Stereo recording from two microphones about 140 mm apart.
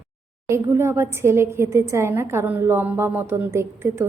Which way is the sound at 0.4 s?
20° right (ahead or behind).